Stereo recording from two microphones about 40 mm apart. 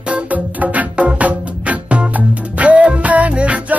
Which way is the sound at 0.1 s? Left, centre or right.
Right.